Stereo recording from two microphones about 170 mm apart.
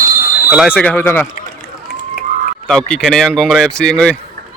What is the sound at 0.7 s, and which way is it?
Speech, 10° left (ahead or behind).